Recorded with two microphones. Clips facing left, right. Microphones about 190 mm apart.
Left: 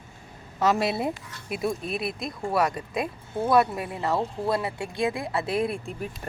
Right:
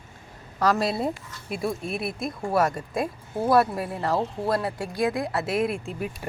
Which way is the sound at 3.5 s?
20° left (ahead or behind).